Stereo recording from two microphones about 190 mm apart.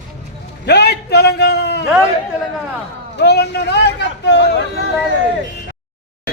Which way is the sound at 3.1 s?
60° left (ahead or behind).